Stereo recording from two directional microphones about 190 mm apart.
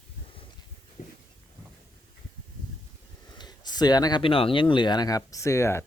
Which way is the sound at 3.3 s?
20° left (ahead or behind).